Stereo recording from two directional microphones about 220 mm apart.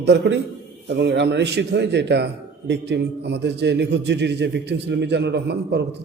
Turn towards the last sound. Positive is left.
turn(degrees=-50)  # may be behind; listen again after turning